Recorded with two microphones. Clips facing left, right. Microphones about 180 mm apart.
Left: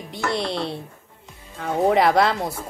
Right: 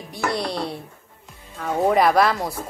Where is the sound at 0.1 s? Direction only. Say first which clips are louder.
Even; 25° left (ahead or behind).